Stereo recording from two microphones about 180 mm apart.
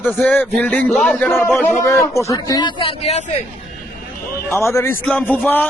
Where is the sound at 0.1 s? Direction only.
10° left (ahead or behind); by 3.2 s 35° left (ahead or behind).